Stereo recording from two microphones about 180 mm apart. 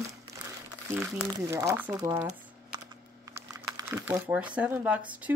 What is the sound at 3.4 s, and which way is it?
Speech, 15° right (ahead or behind).